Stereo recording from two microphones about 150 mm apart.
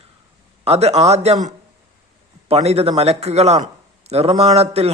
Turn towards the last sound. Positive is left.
turn(degrees=-45)  # may be behind; listen again after turning